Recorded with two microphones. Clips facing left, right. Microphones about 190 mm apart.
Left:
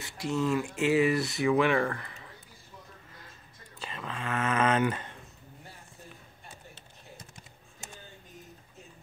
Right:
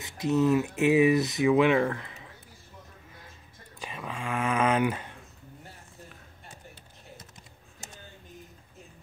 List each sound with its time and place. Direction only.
0.0 s speech: 20° right (ahead or behind)
3.8 s speech: 10° right (ahead or behind)